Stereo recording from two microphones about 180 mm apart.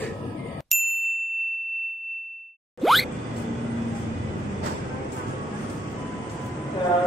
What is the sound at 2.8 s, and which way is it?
Music, centre (ahead or behind).